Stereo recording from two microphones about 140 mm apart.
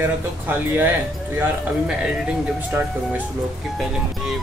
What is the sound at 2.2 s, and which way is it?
Speech, 10° right (ahead or behind).